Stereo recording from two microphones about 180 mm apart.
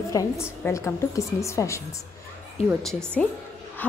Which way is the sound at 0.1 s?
15° left (ahead or behind).